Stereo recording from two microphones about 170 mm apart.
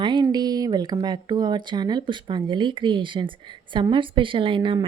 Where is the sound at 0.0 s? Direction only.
25° right (ahead or behind).